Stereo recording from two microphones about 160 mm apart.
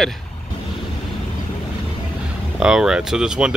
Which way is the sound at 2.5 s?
5° right (ahead or behind).